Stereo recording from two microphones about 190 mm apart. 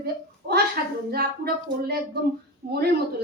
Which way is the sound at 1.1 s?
55° right (ahead or behind).